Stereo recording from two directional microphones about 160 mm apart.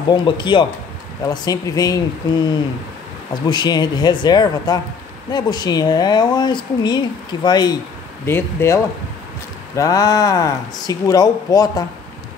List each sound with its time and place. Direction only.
0.1 s speech: 30° left (ahead or behind)
8.3 s speech: 15° left (ahead or behind)